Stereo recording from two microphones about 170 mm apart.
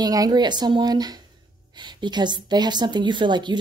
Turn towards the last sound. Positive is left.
turn(degrees=-25)  # may be behind; listen again after turning